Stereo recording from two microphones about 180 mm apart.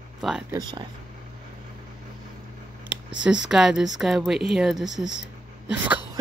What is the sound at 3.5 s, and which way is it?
Speech, centre (ahead or behind).